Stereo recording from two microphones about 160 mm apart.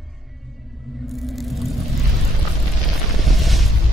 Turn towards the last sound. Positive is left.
turn(degrees=0)  # may be behind; listen again after turning